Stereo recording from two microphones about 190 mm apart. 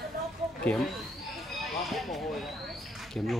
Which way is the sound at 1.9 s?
Centre (ahead or behind).